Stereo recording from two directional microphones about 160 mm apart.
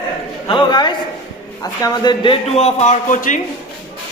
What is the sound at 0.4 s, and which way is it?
A man's voice, 30° left (ahead or behind).